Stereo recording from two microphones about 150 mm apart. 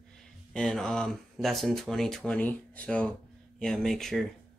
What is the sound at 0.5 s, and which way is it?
Speech, 5° left (ahead or behind).